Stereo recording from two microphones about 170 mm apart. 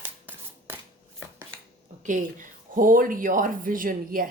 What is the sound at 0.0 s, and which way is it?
Scissors, 10° right (ahead or behind).